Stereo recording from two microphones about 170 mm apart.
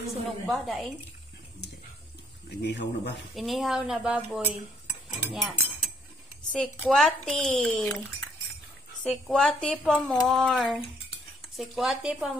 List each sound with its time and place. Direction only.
0.5 s cutlery: centre (ahead or behind)
2.6 s speech: 90° left
3.3 s cutlery: centre (ahead or behind)
6.5 s cutlery: 5° left (ahead or behind)
9.0 s cutlery: 5° left (ahead or behind)